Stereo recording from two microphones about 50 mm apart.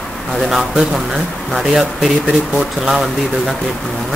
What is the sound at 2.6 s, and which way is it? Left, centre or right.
Speech, centre.